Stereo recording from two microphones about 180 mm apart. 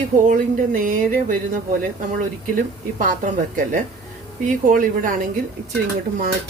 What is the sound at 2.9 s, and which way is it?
Speech, 45° right (ahead or behind).